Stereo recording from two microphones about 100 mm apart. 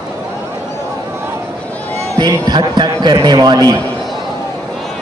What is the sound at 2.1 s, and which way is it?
Speech, 45° right (ahead or behind).